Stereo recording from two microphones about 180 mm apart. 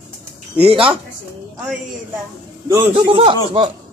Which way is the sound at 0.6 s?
30° right (ahead or behind).